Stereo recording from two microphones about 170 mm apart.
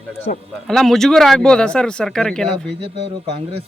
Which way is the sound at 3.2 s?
35° right (ahead or behind).